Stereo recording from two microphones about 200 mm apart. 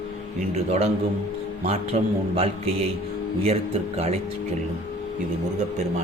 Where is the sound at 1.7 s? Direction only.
30° right (ahead or behind).